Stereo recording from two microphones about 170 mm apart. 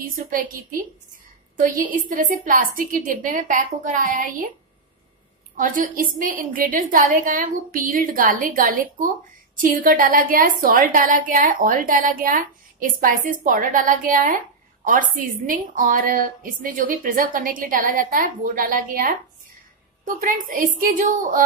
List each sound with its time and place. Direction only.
0.0 s a woman's voice: 55° right (ahead or behind)
5.6 s a woman's voice: 55° right (ahead or behind)
20.2 s a woman's voice: 55° right (ahead or behind)